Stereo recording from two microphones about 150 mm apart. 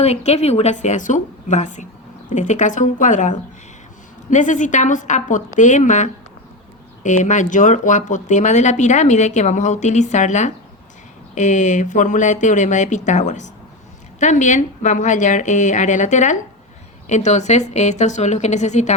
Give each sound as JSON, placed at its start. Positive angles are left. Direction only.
{"t": 0.0, "sound": "a woman's voice", "side_deg": 45}